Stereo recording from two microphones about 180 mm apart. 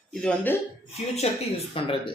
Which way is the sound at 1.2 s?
35° left (ahead or behind).